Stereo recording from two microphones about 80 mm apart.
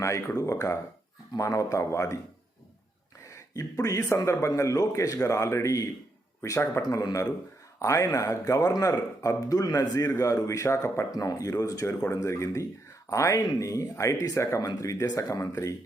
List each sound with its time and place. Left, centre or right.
0.0 s speech: left
3.2 s speech: left
6.8 s speech: left
7.8 s speech: left